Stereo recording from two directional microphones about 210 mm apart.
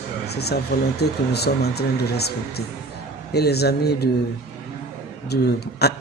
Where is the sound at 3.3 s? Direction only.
50° left (ahead or behind).